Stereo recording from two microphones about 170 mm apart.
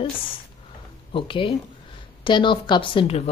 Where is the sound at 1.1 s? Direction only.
30° left (ahead or behind).